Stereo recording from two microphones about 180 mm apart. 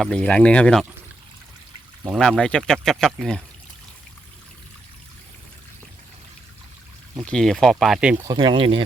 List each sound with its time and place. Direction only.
0.0 s speech: 5° left (ahead or behind)
2.0 s speech: centre (ahead or behind)
7.2 s speech: centre (ahead or behind)
8.1 s speech: 20° right (ahead or behind)